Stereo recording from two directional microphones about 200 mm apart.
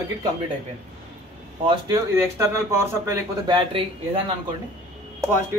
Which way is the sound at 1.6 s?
15° right (ahead or behind).